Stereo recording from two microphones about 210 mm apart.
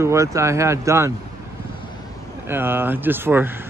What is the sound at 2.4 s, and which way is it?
Speech, 10° right (ahead or behind).